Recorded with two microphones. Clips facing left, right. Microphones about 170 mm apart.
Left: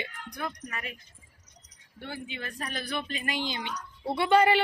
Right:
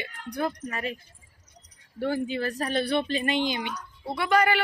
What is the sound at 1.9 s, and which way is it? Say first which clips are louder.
Speech: right 12 dB; 40° right (ahead or behind).